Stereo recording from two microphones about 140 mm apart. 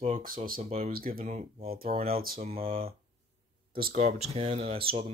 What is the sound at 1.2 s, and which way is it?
Speech, 55° right (ahead or behind).